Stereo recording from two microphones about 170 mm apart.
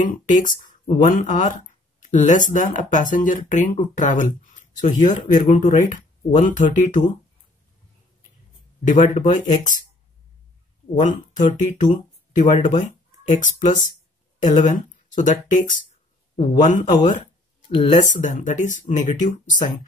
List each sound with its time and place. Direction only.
0.0 s speech: 50° left (ahead or behind)
8.8 s speech: 50° left (ahead or behind)
11.0 s speech: 45° left (ahead or behind)